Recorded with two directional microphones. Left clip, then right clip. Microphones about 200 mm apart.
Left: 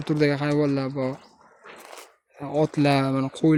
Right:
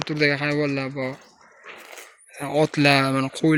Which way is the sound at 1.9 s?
Centre (ahead or behind).